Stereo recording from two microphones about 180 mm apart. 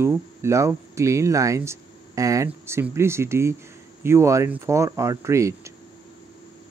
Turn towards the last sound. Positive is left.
turn(degrees=-15)  # may be behind; listen again after turning